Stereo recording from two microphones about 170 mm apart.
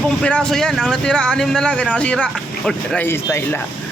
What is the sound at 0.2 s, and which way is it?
Speech, 5° left (ahead or behind).